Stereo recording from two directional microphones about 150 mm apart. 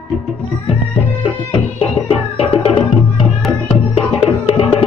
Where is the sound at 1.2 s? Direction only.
40° left (ahead or behind).